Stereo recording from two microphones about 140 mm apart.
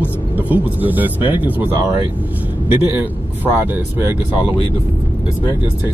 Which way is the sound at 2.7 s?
15° right (ahead or behind).